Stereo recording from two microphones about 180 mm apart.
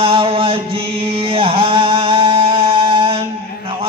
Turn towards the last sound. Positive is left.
turn(degrees=-30)  # may be behind; listen again after turning